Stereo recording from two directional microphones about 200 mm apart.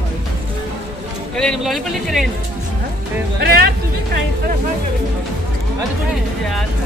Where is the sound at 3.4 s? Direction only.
50° right (ahead or behind).